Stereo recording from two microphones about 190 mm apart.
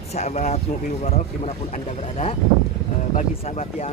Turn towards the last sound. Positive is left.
turn(degrees=35)  # may be behind; listen again after turning